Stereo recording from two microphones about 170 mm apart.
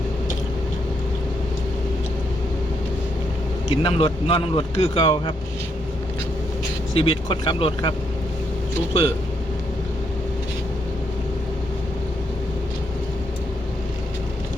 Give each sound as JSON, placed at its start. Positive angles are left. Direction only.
{"t": 3.7, "sound": "speech", "side_deg": 35}
{"t": 6.9, "sound": "speech", "side_deg": 30}